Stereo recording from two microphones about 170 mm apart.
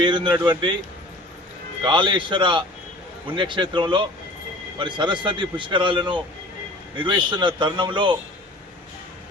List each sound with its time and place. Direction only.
0.0 s speech: 30° right (ahead or behind)
1.8 s speech: 30° right (ahead or behind)